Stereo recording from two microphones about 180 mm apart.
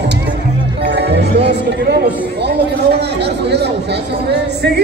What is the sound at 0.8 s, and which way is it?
Speech, 70° right (ahead or behind).